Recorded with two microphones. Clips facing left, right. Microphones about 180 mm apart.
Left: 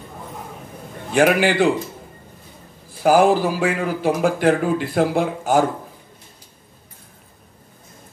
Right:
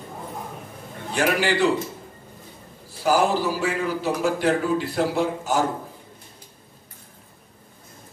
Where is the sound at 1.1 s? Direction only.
55° left (ahead or behind).